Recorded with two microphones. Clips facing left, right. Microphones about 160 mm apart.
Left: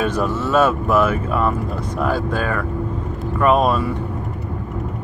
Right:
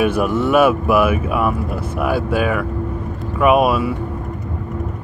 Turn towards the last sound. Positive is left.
turn(degrees=-10)  # may be behind; listen again after turning